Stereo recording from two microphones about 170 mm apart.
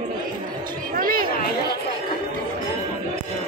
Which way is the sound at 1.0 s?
60° right (ahead or behind).